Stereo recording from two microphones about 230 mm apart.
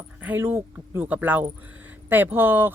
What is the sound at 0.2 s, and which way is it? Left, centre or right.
Speech, centre.